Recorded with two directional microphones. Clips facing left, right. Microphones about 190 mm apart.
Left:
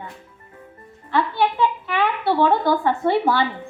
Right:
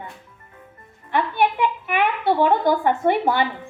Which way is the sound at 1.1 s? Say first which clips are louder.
Even; 20° right (ahead or behind).